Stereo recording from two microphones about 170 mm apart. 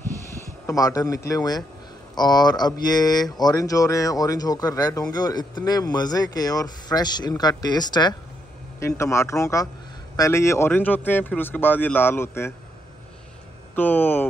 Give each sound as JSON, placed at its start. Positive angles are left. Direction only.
{"t": 0.7, "sound": "speech", "side_deg": 20}
{"t": 13.7, "sound": "speech", "side_deg": 10}